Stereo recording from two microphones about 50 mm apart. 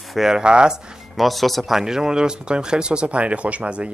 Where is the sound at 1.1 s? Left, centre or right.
Centre.